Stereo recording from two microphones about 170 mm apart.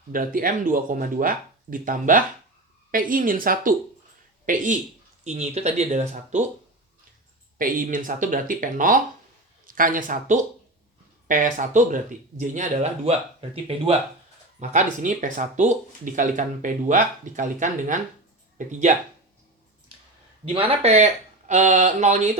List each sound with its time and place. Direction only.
0.1 s speech: 55° right (ahead or behind)
7.6 s speech: 55° right (ahead or behind)
14.6 s speech: 45° right (ahead or behind)
20.5 s speech: 30° right (ahead or behind)